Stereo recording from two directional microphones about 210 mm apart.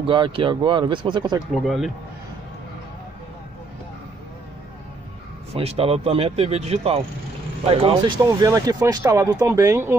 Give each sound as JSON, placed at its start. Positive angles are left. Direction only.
{"t": 0.0, "sound": "speech", "side_deg": -25}
{"t": 1.5, "sound": "speech", "side_deg": 0}
{"t": 5.5, "sound": "speech", "side_deg": -30}